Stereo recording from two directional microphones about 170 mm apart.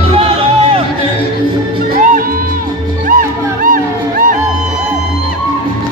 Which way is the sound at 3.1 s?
55° right (ahead or behind).